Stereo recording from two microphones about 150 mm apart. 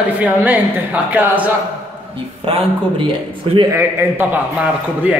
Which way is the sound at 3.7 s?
15° right (ahead or behind).